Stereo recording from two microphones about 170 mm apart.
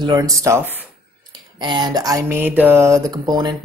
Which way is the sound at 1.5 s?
25° right (ahead or behind).